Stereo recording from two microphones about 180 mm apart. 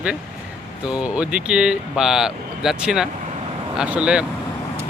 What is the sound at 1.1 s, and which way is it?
Speech, 5° right (ahead or behind).